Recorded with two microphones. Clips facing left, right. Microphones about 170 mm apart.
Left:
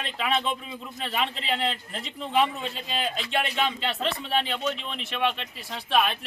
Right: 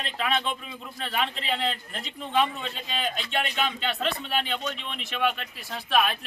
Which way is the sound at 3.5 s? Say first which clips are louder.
Left 1 dB; centre (ahead or behind).